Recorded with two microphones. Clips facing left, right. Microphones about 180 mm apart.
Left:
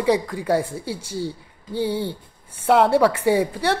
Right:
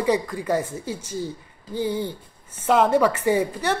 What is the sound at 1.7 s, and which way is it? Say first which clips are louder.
Speech: left 1 dB; 65° left (ahead or behind).